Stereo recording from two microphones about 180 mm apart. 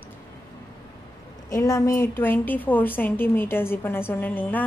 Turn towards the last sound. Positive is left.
turn(degrees=10)  # may be behind; listen again after turning